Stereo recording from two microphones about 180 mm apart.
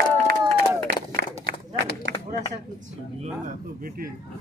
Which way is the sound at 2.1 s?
85° right.